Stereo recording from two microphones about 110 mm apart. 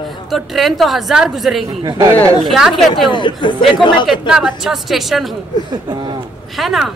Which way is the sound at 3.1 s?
45° left (ahead or behind).